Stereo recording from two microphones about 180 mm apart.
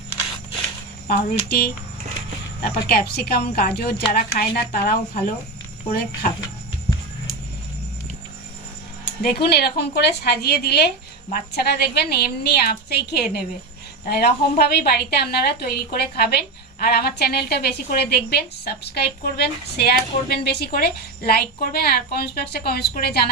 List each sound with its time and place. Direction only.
1.0 s a woman's voice: 60° left (ahead or behind)
9.2 s a woman's voice: 60° left (ahead or behind)